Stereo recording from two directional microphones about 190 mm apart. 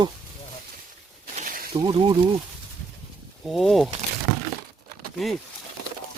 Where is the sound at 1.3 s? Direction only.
45° right (ahead or behind).